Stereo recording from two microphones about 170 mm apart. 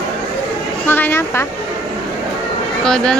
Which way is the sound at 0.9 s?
15° left (ahead or behind).